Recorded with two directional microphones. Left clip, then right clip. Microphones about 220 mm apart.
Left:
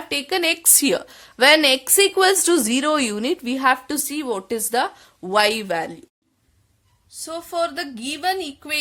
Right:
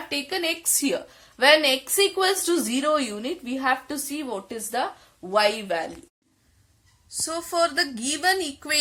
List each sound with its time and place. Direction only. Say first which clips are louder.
0.1 s a woman's voice: left 6 dB; 50° left (ahead or behind)
7.1 s a woman's voice: even; centre (ahead or behind)